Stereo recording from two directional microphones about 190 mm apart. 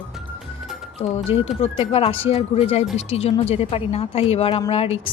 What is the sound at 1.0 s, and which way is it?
Speech, 35° left (ahead or behind).